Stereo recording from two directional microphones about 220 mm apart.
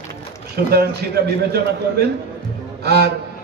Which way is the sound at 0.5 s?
45° right (ahead or behind).